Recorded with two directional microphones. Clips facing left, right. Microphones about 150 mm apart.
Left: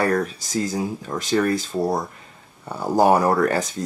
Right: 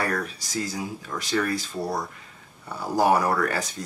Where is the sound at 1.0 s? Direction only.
35° left (ahead or behind).